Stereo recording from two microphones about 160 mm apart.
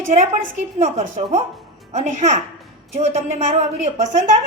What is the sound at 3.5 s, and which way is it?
Speech, 45° right (ahead or behind).